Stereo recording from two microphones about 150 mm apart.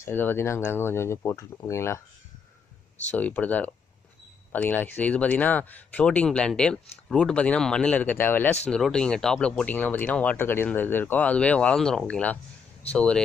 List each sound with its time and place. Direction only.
0.0 s speech: 15° left (ahead or behind)
3.1 s speech: 10° left (ahead or behind)